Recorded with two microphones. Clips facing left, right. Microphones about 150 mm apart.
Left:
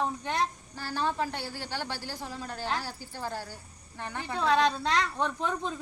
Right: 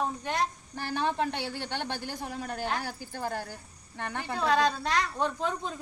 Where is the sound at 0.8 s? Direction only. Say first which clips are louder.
Right 1 dB; 60° right (ahead or behind).